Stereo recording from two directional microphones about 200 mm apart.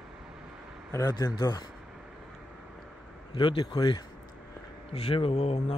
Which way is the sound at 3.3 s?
25° left (ahead or behind).